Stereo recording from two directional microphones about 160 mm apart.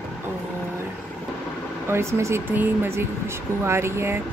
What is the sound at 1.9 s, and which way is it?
Speech, 15° right (ahead or behind).